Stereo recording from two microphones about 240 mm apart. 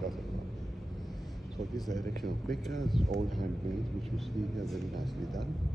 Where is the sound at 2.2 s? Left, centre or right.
Centre.